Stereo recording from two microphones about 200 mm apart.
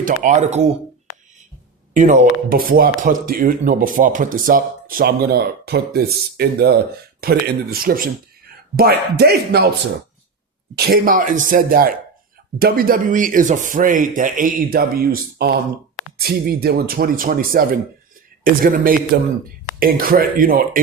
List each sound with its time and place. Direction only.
0.0 s speech: 40° right (ahead or behind)
1.9 s speech: 40° right (ahead or behind)
10.8 s speech: 50° right (ahead or behind)